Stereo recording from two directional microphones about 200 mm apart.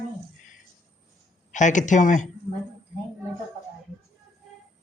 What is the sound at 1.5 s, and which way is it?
Speech, 40° left (ahead or behind).